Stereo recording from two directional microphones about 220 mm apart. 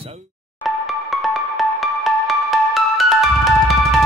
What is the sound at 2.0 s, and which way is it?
Music, centre (ahead or behind).